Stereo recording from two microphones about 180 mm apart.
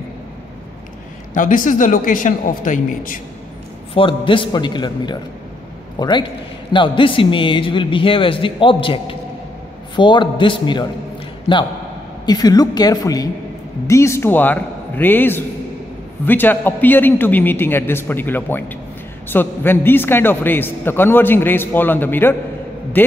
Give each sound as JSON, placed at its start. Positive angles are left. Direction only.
{"t": 1.3, "sound": "speech", "side_deg": 45}
{"t": 3.9, "sound": "a man's voice", "side_deg": 30}